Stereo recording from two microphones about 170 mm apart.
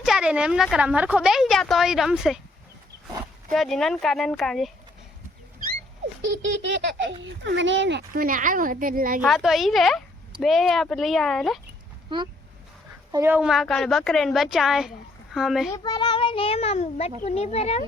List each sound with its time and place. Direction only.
0.0 s speech: 5° right (ahead or behind)
3.5 s speech: centre (ahead or behind)
6.2 s a sound: 90° right
7.2 s speech: 90° right; by 9.2 s 55° right (ahead or behind)
9.2 s speech: centre (ahead or behind)
13.1 s a woman's voice: 20° right (ahead or behind)
13.3 s speech: 5° right (ahead or behind)
15.7 s a child's voice: 25° left (ahead or behind)